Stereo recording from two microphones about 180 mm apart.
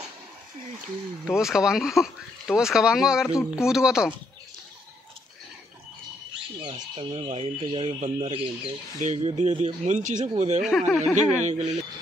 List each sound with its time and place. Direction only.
1.2 s speech: centre (ahead or behind)
6.6 s speech: 30° right (ahead or behind)
9.0 s speech: 40° right (ahead or behind)
10.6 s speech: centre (ahead or behind)
11.4 s speech: 40° right (ahead or behind)